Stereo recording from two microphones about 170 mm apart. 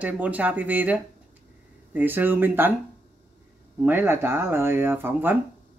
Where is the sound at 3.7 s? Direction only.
10° right (ahead or behind).